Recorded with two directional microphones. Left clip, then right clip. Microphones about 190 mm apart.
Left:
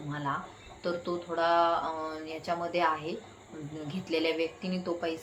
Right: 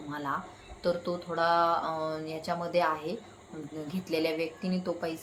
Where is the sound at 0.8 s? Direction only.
20° right (ahead or behind).